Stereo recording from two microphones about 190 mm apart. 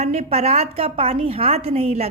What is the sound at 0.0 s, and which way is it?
A woman's voice, 35° right (ahead or behind).